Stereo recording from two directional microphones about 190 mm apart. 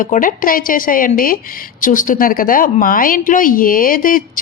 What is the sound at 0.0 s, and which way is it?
A woman's voice, 45° left (ahead or behind).